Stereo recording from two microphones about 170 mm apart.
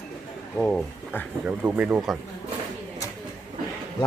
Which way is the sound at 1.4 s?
10° right (ahead or behind).